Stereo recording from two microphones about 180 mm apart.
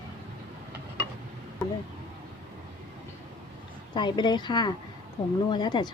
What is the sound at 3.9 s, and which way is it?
Speech, 25° left (ahead or behind).